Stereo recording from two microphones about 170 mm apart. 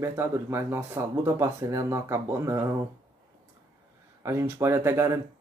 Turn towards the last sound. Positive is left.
turn(degrees=-15)  # may be behind; listen again after turning